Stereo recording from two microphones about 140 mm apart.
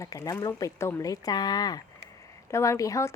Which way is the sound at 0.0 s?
25° left (ahead or behind).